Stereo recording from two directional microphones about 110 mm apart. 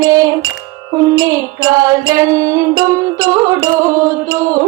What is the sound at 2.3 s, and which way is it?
Music, 30° right (ahead or behind).